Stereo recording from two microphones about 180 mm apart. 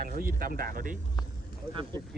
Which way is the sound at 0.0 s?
50° right (ahead or behind).